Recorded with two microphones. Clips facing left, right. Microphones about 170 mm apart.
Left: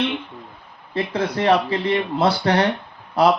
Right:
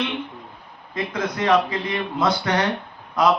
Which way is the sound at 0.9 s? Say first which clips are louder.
Left 3 dB; 30° left (ahead or behind).